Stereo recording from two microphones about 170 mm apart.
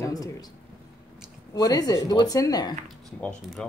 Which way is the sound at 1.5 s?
20° left (ahead or behind).